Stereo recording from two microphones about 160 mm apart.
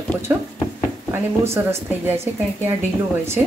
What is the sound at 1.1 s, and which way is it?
Speech, 15° right (ahead or behind).